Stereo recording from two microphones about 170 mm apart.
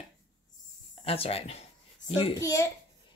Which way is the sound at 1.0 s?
35° left (ahead or behind).